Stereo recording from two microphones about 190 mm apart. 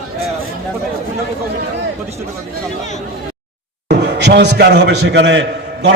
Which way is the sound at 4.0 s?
65° right (ahead or behind).